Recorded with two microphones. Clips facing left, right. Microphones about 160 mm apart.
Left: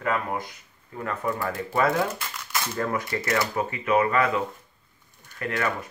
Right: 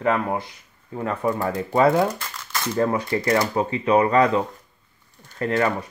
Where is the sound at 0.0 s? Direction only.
25° right (ahead or behind).